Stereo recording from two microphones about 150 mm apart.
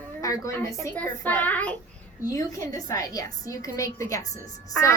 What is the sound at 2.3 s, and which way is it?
A woman's voice, 20° left (ahead or behind).